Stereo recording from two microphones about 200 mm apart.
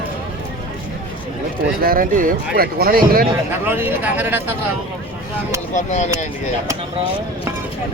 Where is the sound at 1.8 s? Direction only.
45° right (ahead or behind).